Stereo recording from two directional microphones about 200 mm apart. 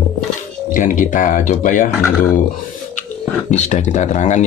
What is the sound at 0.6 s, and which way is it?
Speech, 40° left (ahead or behind).